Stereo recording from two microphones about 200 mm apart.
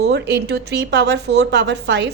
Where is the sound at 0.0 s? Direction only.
55° right (ahead or behind).